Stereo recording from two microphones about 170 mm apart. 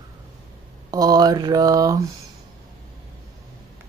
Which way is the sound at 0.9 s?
25° right (ahead or behind).